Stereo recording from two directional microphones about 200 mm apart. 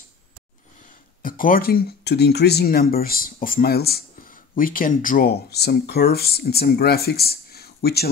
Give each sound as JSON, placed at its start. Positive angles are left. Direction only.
{"t": 0.8, "sound": "speech", "side_deg": 45}